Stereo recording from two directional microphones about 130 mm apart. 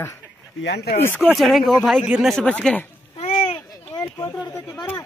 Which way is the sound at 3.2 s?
45° left (ahead or behind).